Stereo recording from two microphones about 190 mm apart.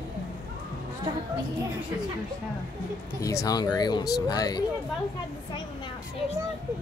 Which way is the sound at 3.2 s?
15° left (ahead or behind).